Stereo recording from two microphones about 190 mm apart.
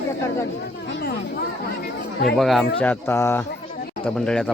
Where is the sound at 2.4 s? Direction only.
Centre (ahead or behind).